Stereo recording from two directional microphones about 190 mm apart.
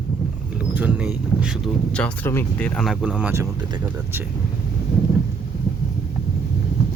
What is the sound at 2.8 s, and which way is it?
Speech, 5° right (ahead or behind).